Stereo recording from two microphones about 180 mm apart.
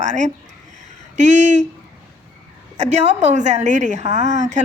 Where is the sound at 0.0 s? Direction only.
40° right (ahead or behind).